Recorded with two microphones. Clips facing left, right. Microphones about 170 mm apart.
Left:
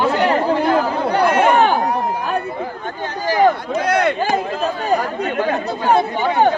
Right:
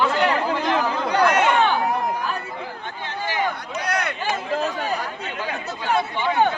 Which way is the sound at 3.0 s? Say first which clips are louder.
Left 10 dB; 40° left (ahead or behind).